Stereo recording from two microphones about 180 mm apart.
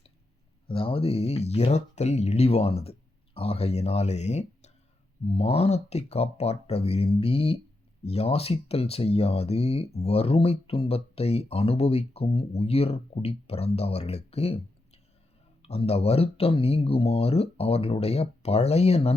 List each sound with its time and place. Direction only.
0.7 s speech: 30° left (ahead or behind)
15.6 s speech: 35° left (ahead or behind)